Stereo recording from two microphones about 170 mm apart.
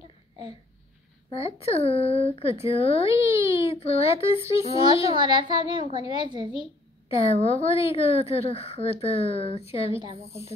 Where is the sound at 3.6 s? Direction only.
35° left (ahead or behind).